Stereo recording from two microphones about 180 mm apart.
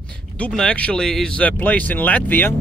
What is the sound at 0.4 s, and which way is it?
Music, 5° left (ahead or behind).